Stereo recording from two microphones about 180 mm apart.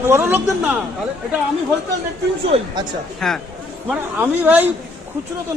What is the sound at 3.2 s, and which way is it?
Speech, 5° left (ahead or behind).